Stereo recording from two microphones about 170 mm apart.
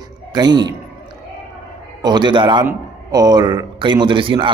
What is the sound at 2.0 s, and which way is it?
A man's voice, 25° right (ahead or behind).